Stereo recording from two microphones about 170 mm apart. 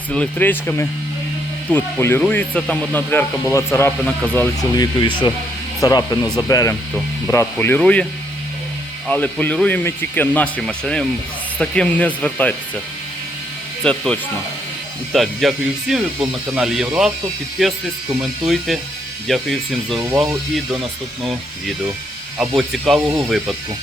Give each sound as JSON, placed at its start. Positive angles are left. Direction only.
{"t": 0.1, "sound": "speech", "side_deg": 10}
{"t": 4.0, "sound": "speech", "side_deg": 5}
{"t": 4.7, "sound": "speech", "side_deg": 25}
{"t": 9.0, "sound": "speech", "side_deg": 10}
{"t": 13.8, "sound": "speech", "side_deg": 5}
{"t": 22.4, "sound": "speech", "side_deg": 0}